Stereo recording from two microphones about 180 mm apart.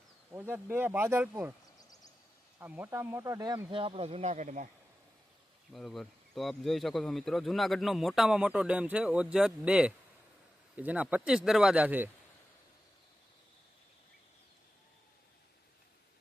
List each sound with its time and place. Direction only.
0.3 s speech: 10° right (ahead or behind)
2.6 s speech: 10° right (ahead or behind); by 4.7 s 45° right (ahead or behind)
5.7 s speech: centre (ahead or behind)